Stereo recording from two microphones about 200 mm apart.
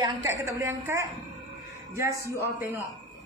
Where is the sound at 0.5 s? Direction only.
15° right (ahead or behind).